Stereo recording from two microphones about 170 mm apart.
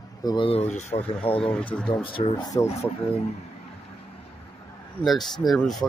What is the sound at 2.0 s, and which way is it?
Speech, 30° left (ahead or behind).